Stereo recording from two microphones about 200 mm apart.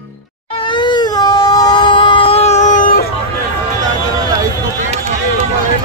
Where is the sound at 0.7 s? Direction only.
25° left (ahead or behind); by 3.1 s 45° left (ahead or behind).